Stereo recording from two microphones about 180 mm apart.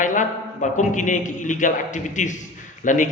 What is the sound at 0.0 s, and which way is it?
A man's voice, 45° left (ahead or behind).